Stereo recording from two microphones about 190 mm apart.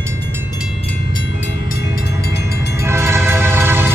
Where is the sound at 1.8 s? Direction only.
15° right (ahead or behind).